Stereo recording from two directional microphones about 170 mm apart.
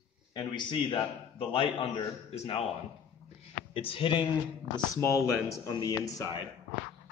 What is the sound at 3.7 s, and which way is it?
Speech, 30° left (ahead or behind).